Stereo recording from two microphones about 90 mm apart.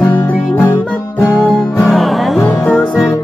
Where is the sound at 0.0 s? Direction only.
25° left (ahead or behind).